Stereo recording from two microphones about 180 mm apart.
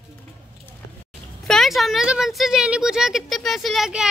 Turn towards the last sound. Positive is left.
turn(degrees=-5)  # may be behind; listen again after turning